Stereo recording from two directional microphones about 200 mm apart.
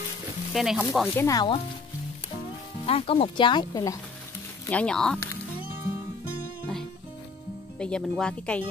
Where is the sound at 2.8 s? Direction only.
30° left (ahead or behind).